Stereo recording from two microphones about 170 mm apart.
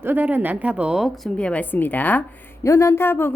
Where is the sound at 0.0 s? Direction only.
10° right (ahead or behind).